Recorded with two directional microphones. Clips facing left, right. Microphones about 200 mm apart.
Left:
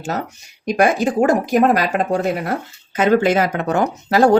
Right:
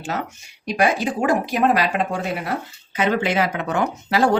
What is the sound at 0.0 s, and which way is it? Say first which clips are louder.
Speech: left 3 dB; 40° left (ahead or behind).